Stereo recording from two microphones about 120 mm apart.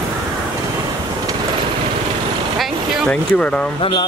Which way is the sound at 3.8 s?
45° left (ahead or behind).